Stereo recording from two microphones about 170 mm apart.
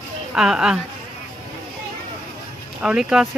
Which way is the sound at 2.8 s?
5° right (ahead or behind).